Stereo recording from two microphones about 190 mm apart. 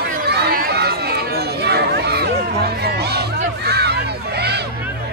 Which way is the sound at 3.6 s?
60° right (ahead or behind).